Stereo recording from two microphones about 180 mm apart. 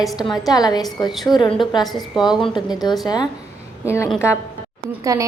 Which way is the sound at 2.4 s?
25° left (ahead or behind).